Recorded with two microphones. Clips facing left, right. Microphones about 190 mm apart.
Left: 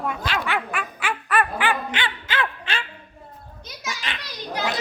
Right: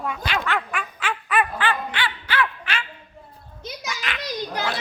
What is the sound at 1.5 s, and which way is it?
Dog, 15° left (ahead or behind).